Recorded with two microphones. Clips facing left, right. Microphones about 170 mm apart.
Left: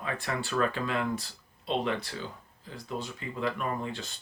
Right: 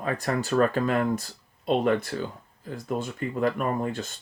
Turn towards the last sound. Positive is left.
turn(degrees=-50)  # may be behind; listen again after turning